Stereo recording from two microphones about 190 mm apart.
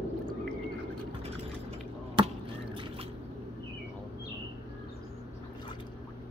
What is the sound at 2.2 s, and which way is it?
Basketball bounce, 25° right (ahead or behind).